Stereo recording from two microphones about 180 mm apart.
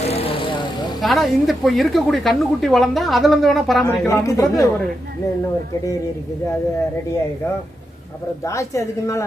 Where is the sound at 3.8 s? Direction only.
10° left (ahead or behind).